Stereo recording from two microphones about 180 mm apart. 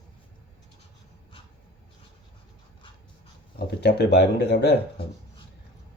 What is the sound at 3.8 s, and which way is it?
Speech, 65° left (ahead or behind).